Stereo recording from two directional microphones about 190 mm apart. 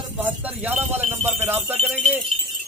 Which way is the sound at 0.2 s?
10° right (ahead or behind).